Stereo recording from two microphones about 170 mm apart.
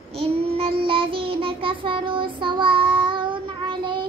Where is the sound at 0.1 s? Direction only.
35° right (ahead or behind).